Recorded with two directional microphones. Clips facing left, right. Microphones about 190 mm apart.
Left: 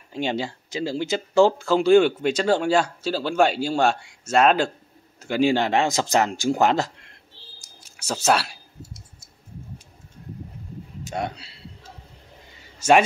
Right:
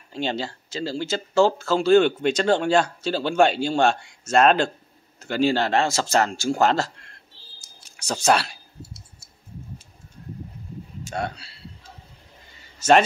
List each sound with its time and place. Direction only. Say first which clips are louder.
0.1 s speech: left 1 dB; 15° left (ahead or behind)
8.0 s speech: right 1 dB; 5° left (ahead or behind)
11.1 s a man's voice: even; 15° left (ahead or behind)
12.7 s a sound: even; 10° left (ahead or behind)